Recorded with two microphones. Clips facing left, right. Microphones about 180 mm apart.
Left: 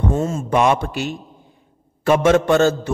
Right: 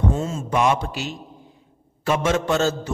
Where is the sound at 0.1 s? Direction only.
50° left (ahead or behind).